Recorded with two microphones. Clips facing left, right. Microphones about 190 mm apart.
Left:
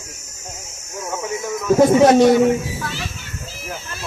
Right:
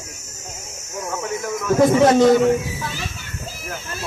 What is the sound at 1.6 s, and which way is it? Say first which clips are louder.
Speech: left 2 dB; 15° left (ahead or behind).